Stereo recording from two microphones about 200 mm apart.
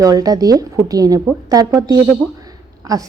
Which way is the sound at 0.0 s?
20° right (ahead or behind).